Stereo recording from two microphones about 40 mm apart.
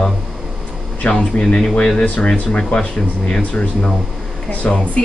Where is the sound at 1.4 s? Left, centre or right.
Left.